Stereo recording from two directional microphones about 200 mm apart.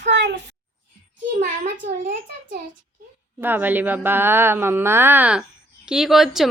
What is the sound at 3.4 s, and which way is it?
Speech, 10° right (ahead or behind).